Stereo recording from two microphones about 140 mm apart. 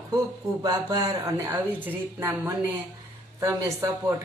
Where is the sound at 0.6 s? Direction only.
30° right (ahead or behind).